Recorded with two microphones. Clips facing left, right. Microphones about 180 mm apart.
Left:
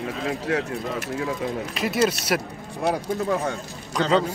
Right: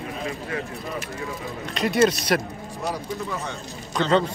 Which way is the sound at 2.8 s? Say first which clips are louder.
Left 6 dB; 55° left (ahead or behind).